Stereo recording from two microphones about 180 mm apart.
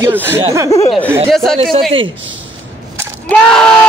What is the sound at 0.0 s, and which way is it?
Speech, 15° right (ahead or behind).